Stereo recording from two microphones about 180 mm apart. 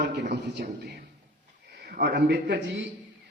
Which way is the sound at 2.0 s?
60° right (ahead or behind).